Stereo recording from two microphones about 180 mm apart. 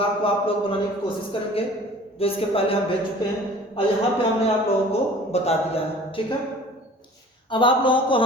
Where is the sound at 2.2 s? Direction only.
30° left (ahead or behind).